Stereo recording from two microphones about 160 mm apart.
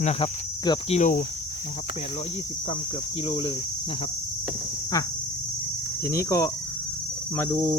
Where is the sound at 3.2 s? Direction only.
40° left (ahead or behind).